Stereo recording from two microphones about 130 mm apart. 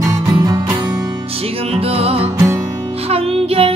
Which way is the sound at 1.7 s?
50° right (ahead or behind).